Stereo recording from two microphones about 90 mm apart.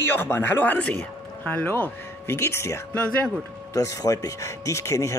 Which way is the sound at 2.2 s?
30° left (ahead or behind).